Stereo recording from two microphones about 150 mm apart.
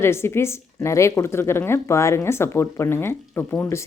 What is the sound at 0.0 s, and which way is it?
A woman's voice, 15° left (ahead or behind).